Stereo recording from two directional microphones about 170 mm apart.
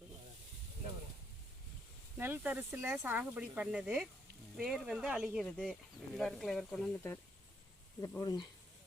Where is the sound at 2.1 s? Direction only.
10° right (ahead or behind).